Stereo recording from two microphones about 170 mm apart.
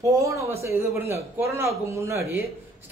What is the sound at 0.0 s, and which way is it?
A man's voice, 20° right (ahead or behind).